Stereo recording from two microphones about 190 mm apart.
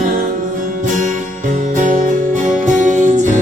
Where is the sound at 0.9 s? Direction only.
40° right (ahead or behind).